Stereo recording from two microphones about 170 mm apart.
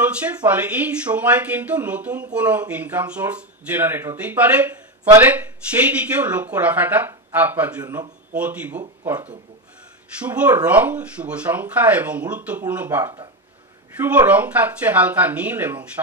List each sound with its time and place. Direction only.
0.0 s speech: 10° right (ahead or behind)
7.8 s speech: 20° right (ahead or behind)
8.4 s speech: 10° right (ahead or behind)
10.2 s speech: 10° right (ahead or behind)